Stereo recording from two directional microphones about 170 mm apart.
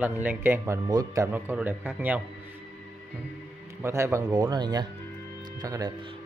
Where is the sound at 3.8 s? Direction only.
15° right (ahead or behind).